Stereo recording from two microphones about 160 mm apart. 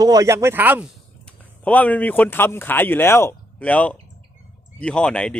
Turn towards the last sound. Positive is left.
turn(degrees=5)  # may be behind; listen again after turning